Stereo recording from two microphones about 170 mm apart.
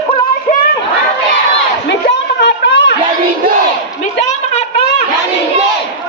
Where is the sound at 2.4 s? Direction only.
90° left.